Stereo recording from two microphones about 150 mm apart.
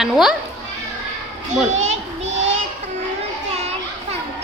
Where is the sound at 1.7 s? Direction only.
50° right (ahead or behind).